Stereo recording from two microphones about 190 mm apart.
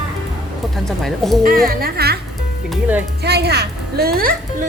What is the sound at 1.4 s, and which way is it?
Speech, 50° right (ahead or behind).